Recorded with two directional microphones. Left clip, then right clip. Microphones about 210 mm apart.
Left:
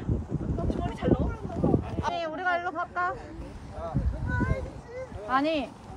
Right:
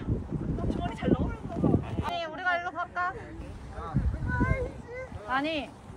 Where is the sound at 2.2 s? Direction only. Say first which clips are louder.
Left 2 dB; 50° left (ahead or behind).